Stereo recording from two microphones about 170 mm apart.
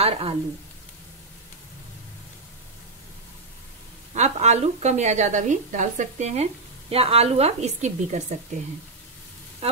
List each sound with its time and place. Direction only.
0.0 s a woman's voice: 35° right (ahead or behind)
4.1 s a woman's voice: 40° right (ahead or behind)
9.6 s a sound: 35° right (ahead or behind)